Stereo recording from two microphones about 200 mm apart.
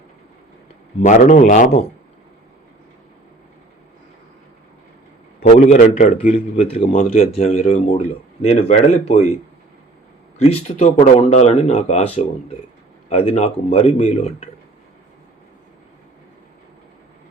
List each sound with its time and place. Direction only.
1.0 s speech: 40° left (ahead or behind)
5.4 s speech: 30° left (ahead or behind)
10.3 s speech: 30° left (ahead or behind)